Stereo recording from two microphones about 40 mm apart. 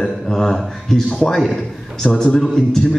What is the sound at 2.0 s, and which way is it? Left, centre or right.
Speech, left.